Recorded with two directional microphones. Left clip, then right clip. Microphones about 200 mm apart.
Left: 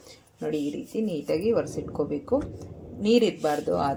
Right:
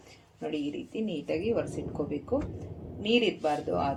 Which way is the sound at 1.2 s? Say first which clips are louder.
Left 5 dB; 30° left (ahead or behind).